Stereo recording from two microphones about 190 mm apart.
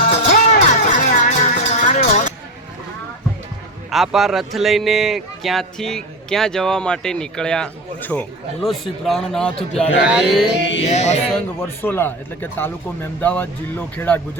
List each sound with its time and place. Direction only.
0.0 s music: 45° left (ahead or behind)
3.9 s a man's voice: centre (ahead or behind)
10.6 s music: 70° left (ahead or behind)
10.8 s speech: 35° left (ahead or behind)
11.6 s speech: 10° left (ahead or behind)